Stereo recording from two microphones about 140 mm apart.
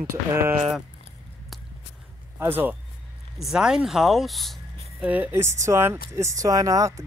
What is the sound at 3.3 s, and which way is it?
Speech, 5° right (ahead or behind).